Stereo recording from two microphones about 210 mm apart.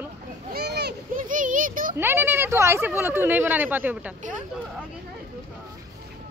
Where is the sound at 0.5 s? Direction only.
50° right (ahead or behind).